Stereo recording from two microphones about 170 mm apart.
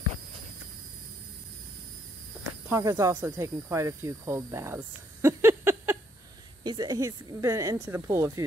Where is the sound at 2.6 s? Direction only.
15° right (ahead or behind).